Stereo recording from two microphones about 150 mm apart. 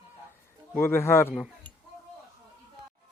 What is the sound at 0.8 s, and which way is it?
Speech, 15° left (ahead or behind).